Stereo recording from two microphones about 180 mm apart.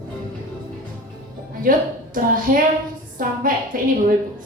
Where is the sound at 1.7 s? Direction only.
50° right (ahead or behind).